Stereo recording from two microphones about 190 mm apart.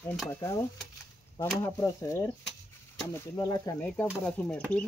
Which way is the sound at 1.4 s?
15° left (ahead or behind).